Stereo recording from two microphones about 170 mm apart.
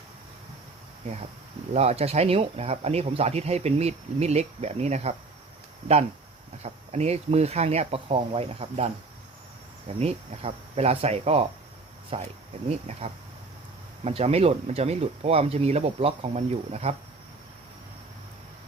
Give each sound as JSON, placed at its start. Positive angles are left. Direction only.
{"t": 1.7, "sound": "speech", "side_deg": -40}
{"t": 6.6, "sound": "speech", "side_deg": -40}
{"t": 10.0, "sound": "speech", "side_deg": -35}